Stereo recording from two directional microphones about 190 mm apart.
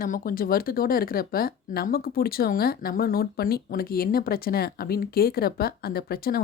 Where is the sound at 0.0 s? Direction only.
50° left (ahead or behind).